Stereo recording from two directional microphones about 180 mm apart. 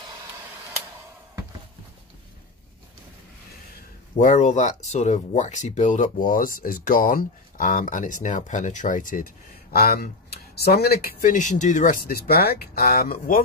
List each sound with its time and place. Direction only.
4.2 s speech: 45° left (ahead or behind)